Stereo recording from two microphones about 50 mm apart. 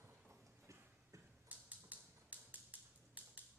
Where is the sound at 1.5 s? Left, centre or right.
Right.